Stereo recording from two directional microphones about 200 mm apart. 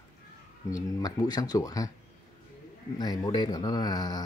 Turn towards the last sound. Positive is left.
turn(degrees=20)  # may be behind; listen again after turning